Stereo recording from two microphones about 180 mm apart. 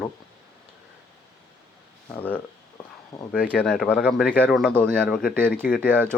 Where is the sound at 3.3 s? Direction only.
5° left (ahead or behind).